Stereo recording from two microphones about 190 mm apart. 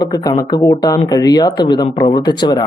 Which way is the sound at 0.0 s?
20° left (ahead or behind).